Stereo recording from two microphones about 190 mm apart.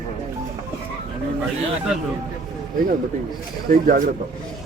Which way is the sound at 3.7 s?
50° right (ahead or behind).